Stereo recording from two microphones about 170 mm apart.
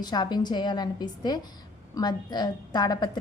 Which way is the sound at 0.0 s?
25° left (ahead or behind).